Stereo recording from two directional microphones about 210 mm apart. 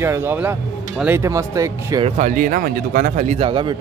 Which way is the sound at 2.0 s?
35° right (ahead or behind).